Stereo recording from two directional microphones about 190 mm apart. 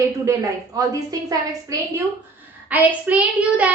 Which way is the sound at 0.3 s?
15° right (ahead or behind).